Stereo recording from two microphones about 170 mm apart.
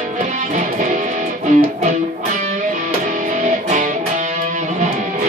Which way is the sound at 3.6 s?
50° right (ahead or behind).